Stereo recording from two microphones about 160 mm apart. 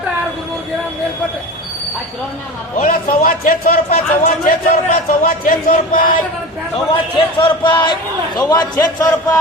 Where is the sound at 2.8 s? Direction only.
55° left (ahead or behind).